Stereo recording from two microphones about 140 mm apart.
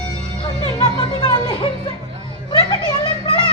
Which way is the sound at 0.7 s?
35° left (ahead or behind).